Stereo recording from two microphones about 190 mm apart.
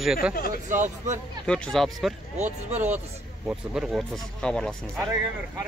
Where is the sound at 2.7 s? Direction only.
10° right (ahead or behind).